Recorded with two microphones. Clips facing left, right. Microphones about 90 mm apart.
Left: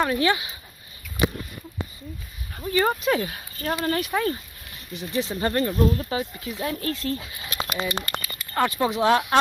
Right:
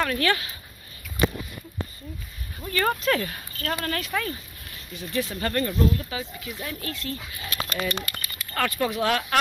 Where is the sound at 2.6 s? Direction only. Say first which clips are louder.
Left 3 dB; 15° left (ahead or behind).